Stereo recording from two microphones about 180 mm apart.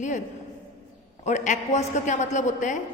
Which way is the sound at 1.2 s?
40° left (ahead or behind).